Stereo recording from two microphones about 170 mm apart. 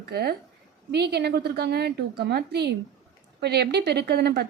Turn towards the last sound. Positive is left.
turn(degrees=-75)  # may be behind; listen again after turning